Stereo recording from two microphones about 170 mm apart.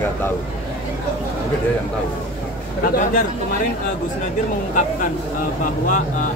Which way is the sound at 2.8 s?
55° left (ahead or behind).